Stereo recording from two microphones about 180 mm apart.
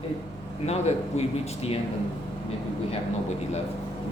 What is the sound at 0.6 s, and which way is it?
A man's voice, 35° left (ahead or behind).